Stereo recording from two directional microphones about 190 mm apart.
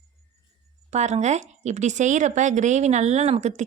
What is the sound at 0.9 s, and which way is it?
A woman's voice, 40° right (ahead or behind).